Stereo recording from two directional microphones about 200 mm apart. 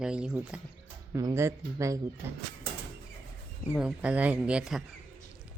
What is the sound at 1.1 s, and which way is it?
Speech, 15° right (ahead or behind).